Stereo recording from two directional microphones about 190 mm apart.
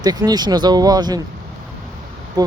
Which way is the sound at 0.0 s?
20° right (ahead or behind).